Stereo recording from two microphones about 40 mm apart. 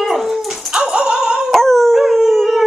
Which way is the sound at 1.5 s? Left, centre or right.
Centre.